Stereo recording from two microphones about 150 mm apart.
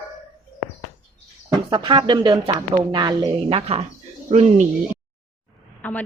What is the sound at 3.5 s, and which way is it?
Speech, 40° right (ahead or behind).